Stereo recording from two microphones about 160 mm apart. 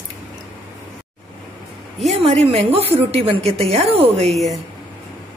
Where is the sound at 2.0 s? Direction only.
40° right (ahead or behind).